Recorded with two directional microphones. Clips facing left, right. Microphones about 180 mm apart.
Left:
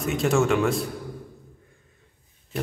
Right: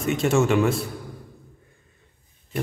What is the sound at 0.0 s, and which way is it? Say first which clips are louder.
Speech: right 1 dB; centre (ahead or behind).